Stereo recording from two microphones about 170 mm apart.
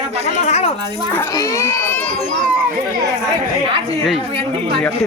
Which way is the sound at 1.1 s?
15° left (ahead or behind).